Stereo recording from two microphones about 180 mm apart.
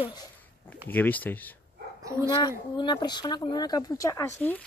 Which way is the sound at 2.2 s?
25° left (ahead or behind).